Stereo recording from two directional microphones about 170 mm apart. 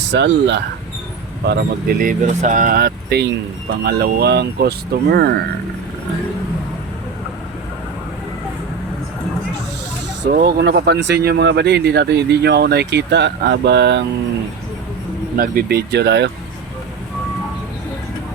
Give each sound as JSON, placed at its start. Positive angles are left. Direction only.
{"t": 0.1, "sound": "speech", "side_deg": -90}
{"t": 1.5, "sound": "speech", "side_deg": -60}
{"t": 10.3, "sound": "speech", "side_deg": -70}
{"t": 15.4, "sound": "speech", "side_deg": -65}